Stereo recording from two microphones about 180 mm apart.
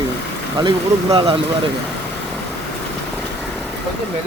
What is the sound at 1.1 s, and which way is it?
Speech, 30° right (ahead or behind).